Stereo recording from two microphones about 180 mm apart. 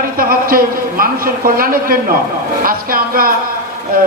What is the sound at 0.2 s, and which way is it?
A man's voice, 55° right (ahead or behind).